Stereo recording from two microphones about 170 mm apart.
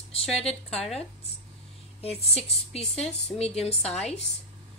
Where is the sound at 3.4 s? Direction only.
40° left (ahead or behind).